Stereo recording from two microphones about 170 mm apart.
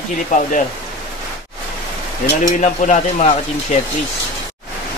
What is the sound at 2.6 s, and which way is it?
Speech, 45° left (ahead or behind).